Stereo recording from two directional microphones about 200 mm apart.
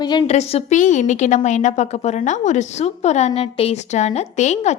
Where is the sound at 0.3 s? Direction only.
30° left (ahead or behind).